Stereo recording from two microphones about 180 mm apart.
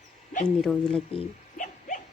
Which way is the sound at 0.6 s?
Centre (ahead or behind).